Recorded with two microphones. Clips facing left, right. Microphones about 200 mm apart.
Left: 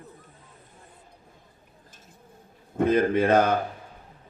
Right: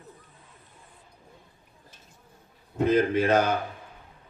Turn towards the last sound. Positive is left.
turn(degrees=55)  # may be behind; listen again after turning